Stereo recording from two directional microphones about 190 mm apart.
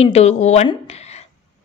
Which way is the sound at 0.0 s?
35° left (ahead or behind).